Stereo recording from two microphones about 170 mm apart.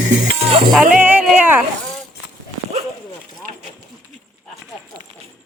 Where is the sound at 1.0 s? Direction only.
10° right (ahead or behind).